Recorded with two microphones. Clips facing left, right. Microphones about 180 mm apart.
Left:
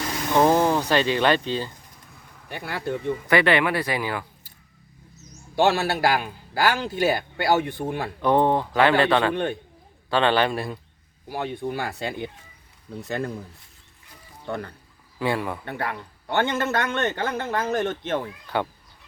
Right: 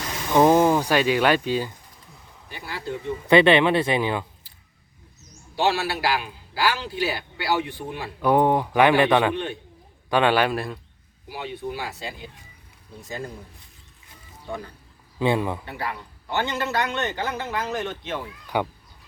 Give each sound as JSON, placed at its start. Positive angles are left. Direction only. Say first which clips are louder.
{"t": 0.3, "sound": "speech", "louder": "right 2 dB", "side_deg": -15}
{"t": 2.5, "sound": "speech", "louder": "left 4 dB", "side_deg": 55}
{"t": 3.2, "sound": "speech", "louder": "right 5 dB", "side_deg": -20}
{"t": 5.5, "sound": "a man's voice", "louder": "left 3 dB", "side_deg": 45}
{"t": 8.2, "sound": "speech", "louder": "right 1 dB", "side_deg": -10}
{"t": 9.3, "sound": "a man's voice", "louder": "left 3 dB", "side_deg": 50}
{"t": 10.1, "sound": "speech", "louder": "right 1 dB", "side_deg": -10}
{"t": 11.3, "sound": "a man's voice", "louder": "left 3 dB", "side_deg": 50}
{"t": 14.4, "sound": "speech", "louder": "left 3 dB", "side_deg": 65}
{"t": 15.2, "sound": "speech", "louder": "right 3 dB", "side_deg": -20}
{"t": 15.6, "sound": "a man's voice", "louder": "left 2 dB", "side_deg": 55}
{"t": 18.4, "sound": "speech", "louder": "right 1 dB", "side_deg": -10}